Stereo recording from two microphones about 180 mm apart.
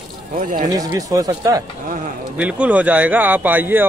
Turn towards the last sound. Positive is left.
turn(degrees=-10)  # may be behind; listen again after turning